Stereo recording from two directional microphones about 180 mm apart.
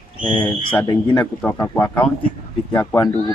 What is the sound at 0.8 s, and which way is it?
A man's voice, 15° left (ahead or behind).